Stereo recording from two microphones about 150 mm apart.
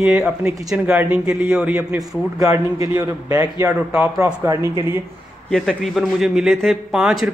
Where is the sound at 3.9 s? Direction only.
10° right (ahead or behind).